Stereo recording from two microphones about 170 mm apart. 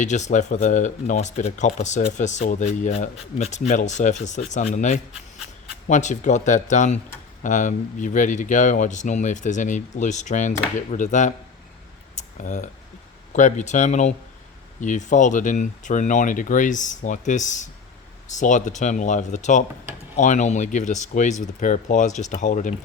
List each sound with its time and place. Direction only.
0.0 s speech: 45° left (ahead or behind)
12.1 s a sound: 45° left (ahead or behind)
13.3 s speech: 45° left (ahead or behind)